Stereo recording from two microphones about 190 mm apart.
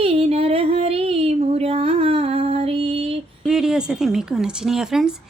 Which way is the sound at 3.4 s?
Centre (ahead or behind).